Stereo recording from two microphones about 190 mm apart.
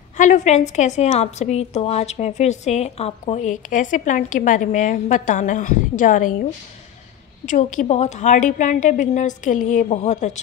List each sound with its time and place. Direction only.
0.2 s a woman's voice: 40° left (ahead or behind)
7.4 s a woman's voice: 45° left (ahead or behind)